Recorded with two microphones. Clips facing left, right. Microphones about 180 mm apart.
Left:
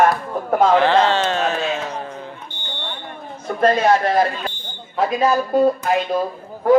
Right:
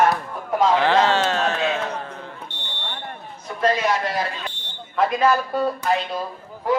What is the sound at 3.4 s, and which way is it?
Speech, 55° left (ahead or behind).